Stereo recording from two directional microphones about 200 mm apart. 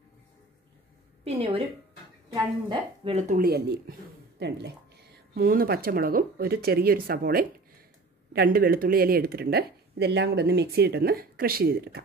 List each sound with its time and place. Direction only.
1.2 s a woman's voice: 30° right (ahead or behind)
2.7 s speech: 25° right (ahead or behind)
3.3 s speech: 50° right (ahead or behind)
5.3 s speech: 45° right (ahead or behind)